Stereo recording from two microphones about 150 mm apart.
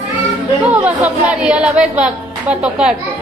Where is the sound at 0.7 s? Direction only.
10° right (ahead or behind).